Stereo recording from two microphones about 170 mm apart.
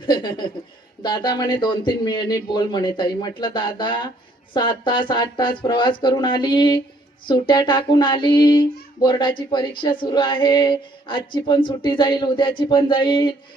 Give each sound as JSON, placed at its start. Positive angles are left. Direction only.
{"t": 0.0, "sound": "speech", "side_deg": 25}
{"t": 1.0, "sound": "female singing", "side_deg": 25}